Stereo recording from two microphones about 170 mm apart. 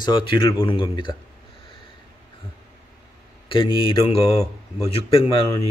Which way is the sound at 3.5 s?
30° left (ahead or behind).